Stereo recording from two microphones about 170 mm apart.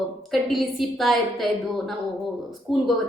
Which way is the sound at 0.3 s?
Centre (ahead or behind).